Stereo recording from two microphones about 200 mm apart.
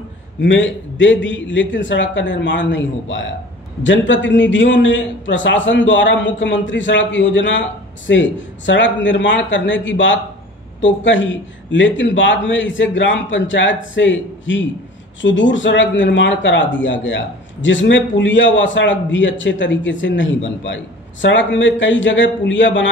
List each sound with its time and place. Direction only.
0.4 s speech: 65° left (ahead or behind)